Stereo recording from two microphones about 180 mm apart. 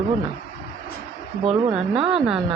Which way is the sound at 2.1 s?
5° right (ahead or behind).